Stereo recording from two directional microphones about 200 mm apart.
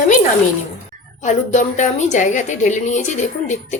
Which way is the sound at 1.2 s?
35° left (ahead or behind).